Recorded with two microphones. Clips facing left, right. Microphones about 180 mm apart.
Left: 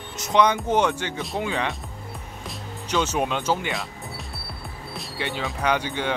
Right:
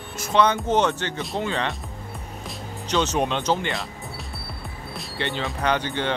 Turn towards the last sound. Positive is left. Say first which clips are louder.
# even
turn(degrees=10)  # may be behind; listen again after turning